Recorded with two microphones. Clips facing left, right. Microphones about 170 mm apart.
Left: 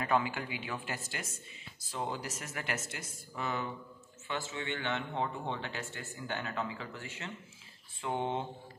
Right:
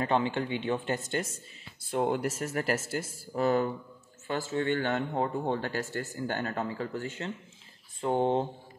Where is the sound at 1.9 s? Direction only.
55° right (ahead or behind).